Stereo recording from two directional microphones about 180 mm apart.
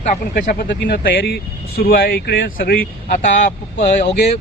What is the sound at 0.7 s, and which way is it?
Speech, 70° left (ahead or behind).